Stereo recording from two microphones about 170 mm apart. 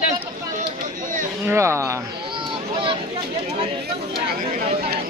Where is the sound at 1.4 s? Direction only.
15° right (ahead or behind).